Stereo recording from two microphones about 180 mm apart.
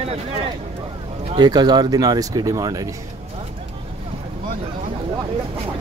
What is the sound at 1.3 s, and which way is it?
Speech, 25° right (ahead or behind).